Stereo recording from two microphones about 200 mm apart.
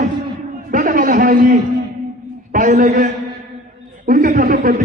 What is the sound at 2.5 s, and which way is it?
A man's voice, 40° right (ahead or behind).